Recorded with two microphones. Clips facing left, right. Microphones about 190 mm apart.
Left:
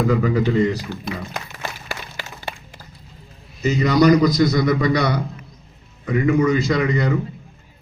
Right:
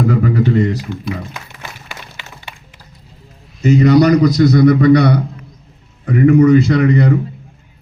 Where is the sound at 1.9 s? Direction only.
40° left (ahead or behind).